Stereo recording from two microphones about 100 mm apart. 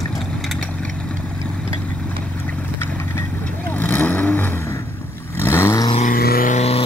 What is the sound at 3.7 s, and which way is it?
Vehicle, 15° left (ahead or behind).